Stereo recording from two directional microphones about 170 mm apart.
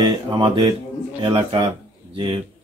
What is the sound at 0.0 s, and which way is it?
A man's voice, 30° right (ahead or behind).